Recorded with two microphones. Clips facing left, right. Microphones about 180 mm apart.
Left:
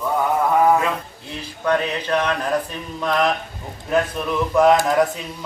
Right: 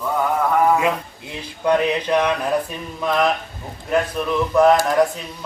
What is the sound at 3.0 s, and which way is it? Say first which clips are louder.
A man's voice: right 1 dB; 5° right (ahead or behind).